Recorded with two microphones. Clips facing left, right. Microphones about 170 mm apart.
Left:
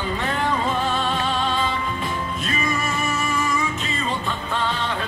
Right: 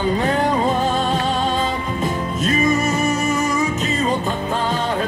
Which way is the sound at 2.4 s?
40° right (ahead or behind).